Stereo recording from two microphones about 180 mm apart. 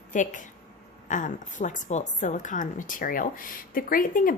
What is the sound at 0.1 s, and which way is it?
A woman's voice, 45° left (ahead or behind).